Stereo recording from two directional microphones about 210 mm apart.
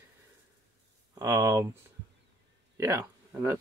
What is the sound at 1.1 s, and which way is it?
Speech, 15° right (ahead or behind).